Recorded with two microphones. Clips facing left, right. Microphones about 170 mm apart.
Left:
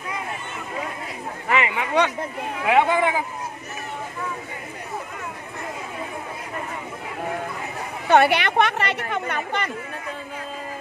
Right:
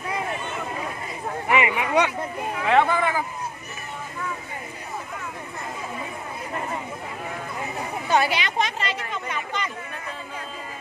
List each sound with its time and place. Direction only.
1.5 s speech: 10° right (ahead or behind)
2.6 s speech: 15° left (ahead or behind)
8.1 s a woman's voice: 60° left (ahead or behind)